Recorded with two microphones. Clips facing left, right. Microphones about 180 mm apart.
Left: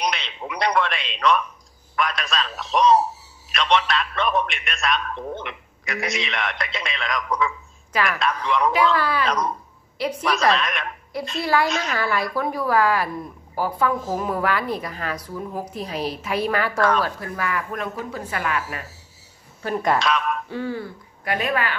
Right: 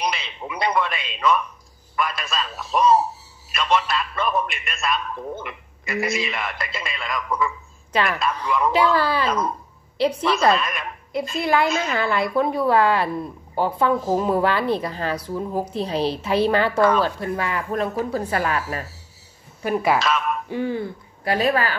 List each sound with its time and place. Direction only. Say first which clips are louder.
0.0 s radio: even; 5° right (ahead or behind)
2.0 s a man's voice: left 1 dB; centre (ahead or behind)
8.9 s a woman's voice: right 1 dB; 30° right (ahead or behind)
10.5 s a man's voice: right 1 dB; 5° right (ahead or behind)
11.3 s a woman's voice: right 1 dB; 20° right (ahead or behind); by 18.9 s 35° right (ahead or behind)
19.6 s a man's voice: right 1 dB; 5° right (ahead or behind)
20.4 s speech: right 3 dB; 15° right (ahead or behind)
21.2 s speech: right 4 dB; 30° right (ahead or behind)